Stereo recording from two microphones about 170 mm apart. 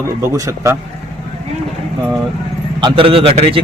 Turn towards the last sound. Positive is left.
turn(degrees=-35)  # may be behind; listen again after turning